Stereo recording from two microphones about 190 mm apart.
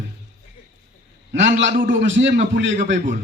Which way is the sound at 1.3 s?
70° right (ahead or behind).